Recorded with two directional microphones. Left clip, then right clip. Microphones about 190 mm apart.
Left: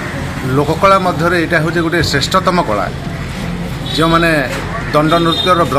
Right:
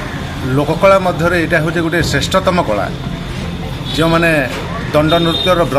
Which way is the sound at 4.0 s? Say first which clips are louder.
Left 1 dB; 5° right (ahead or behind).